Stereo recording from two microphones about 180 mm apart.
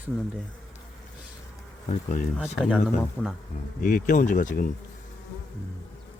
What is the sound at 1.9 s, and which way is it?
Speech, 45° left (ahead or behind).